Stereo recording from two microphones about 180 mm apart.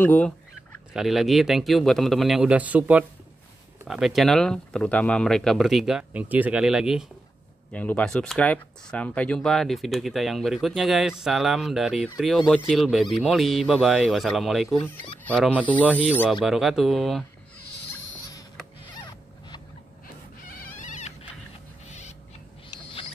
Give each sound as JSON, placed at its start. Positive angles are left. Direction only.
{"t": 0.0, "sound": "fowl", "side_deg": 10}
{"t": 0.9, "sound": "speech", "side_deg": 0}
{"t": 7.7, "sound": "speech", "side_deg": 10}
{"t": 20.5, "sound": "rodents", "side_deg": 50}
{"t": 21.8, "sound": "a sound", "side_deg": 40}